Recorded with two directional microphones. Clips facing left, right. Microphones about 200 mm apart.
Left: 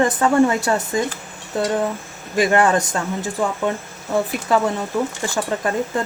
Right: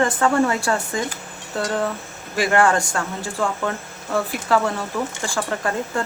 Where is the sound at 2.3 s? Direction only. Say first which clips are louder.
Left 2 dB; 20° left (ahead or behind).